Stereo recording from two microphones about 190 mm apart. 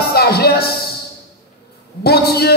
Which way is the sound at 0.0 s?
55° left (ahead or behind).